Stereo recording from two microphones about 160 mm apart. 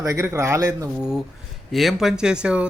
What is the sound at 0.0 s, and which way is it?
Speech, 20° right (ahead or behind).